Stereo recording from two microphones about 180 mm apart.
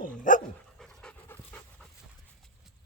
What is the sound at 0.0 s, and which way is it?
Dog, 45° left (ahead or behind).